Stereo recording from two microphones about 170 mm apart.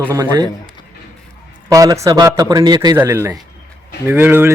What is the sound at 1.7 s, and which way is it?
A man's voice, 20° right (ahead or behind).